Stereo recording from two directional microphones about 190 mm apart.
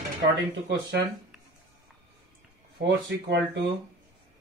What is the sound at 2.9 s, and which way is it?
Speech, 65° right (ahead or behind).